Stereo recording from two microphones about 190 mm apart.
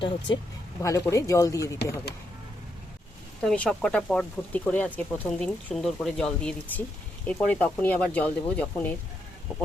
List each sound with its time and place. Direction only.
0.8 s speech: 15° left (ahead or behind)
3.4 s speech: 5° left (ahead or behind)